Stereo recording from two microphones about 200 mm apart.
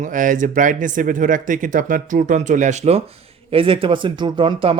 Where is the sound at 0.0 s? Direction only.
40° right (ahead or behind).